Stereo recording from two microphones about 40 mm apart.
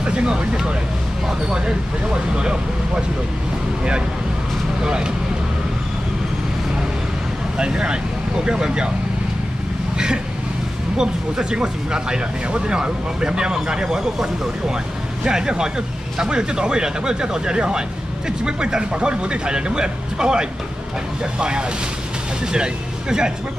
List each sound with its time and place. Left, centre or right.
0.0 s speech: right
4.8 s speech: right
7.5 s speech: right
9.9 s speech: centre